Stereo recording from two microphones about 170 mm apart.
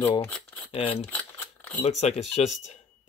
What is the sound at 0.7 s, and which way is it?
Speech, 35° left (ahead or behind).